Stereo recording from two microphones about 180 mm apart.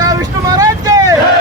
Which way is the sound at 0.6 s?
20° right (ahead or behind).